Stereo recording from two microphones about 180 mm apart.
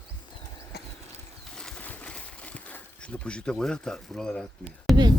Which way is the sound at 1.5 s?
5° left (ahead or behind).